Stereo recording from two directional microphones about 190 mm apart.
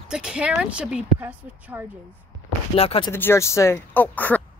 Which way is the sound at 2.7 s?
30° left (ahead or behind).